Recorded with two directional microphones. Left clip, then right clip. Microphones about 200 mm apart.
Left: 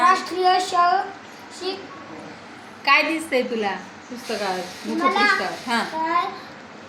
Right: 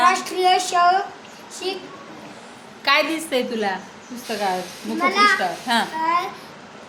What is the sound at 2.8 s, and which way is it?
Speech, 25° right (ahead or behind).